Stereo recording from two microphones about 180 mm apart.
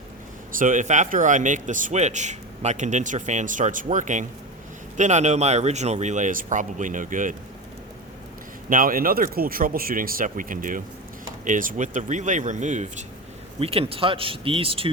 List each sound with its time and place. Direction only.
0.5 s speech: 45° right (ahead or behind)
8.7 s speech: 50° right (ahead or behind); by 14.8 s 30° right (ahead or behind)